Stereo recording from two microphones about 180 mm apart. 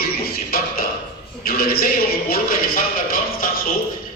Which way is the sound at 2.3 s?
50° left (ahead or behind).